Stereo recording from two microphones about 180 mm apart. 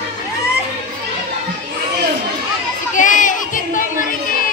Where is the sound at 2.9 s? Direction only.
45° left (ahead or behind).